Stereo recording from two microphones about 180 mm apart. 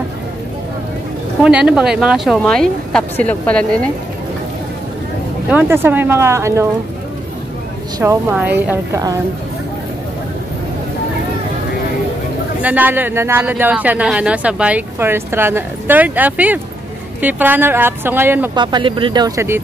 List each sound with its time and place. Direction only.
1.4 s speech: 5° right (ahead or behind)
5.5 s speech: 10° right (ahead or behind)
8.0 s speech: 10° right (ahead or behind)
12.6 s speech: 10° right (ahead or behind)
18.5 s speech: 25° right (ahead or behind)